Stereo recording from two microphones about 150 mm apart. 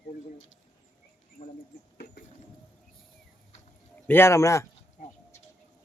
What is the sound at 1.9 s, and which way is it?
Bird, 90° left.